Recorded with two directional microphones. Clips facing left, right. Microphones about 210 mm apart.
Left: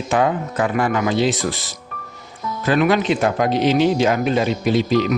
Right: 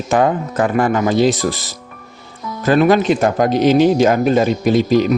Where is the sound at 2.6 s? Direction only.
40° right (ahead or behind).